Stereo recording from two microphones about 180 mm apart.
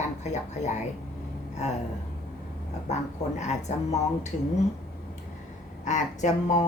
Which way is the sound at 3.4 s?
40° left (ahead or behind).